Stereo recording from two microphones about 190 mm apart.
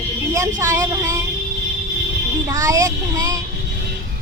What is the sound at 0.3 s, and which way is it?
Speech, 15° right (ahead or behind).